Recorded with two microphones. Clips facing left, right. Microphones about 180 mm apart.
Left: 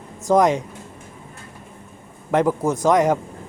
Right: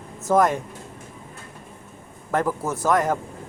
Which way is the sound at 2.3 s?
20° left (ahead or behind).